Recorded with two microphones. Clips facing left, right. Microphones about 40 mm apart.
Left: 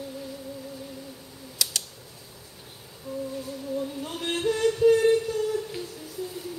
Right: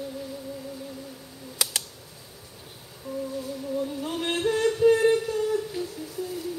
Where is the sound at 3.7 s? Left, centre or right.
Centre.